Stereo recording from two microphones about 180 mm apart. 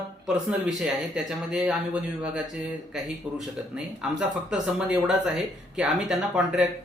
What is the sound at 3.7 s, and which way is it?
Speech, 5° right (ahead or behind).